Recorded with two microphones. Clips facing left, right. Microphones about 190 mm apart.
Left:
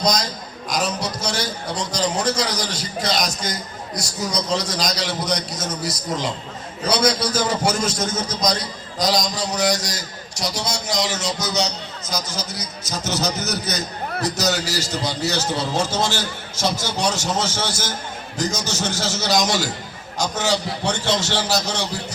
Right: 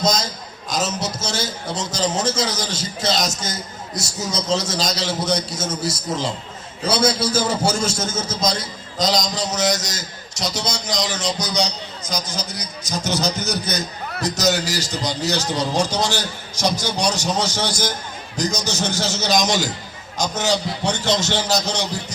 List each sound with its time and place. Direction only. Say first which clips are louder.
0.0 s a man's voice: even; 25° right (ahead or behind)